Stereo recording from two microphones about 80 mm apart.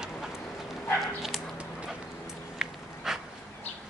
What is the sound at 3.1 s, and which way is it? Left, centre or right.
Dog, centre.